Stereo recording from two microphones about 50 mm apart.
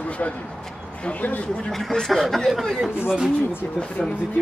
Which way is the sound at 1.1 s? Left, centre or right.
Left.